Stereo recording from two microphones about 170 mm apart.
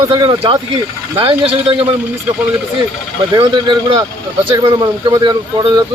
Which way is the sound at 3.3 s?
25° right (ahead or behind).